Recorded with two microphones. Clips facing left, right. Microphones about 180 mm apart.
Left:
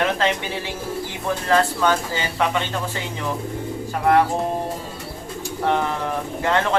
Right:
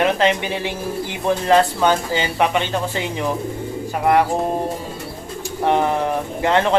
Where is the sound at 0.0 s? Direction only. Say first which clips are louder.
Right 4 dB; 15° right (ahead or behind).